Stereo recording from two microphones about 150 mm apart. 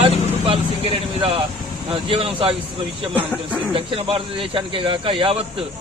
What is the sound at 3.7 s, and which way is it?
Speech, 40° right (ahead or behind).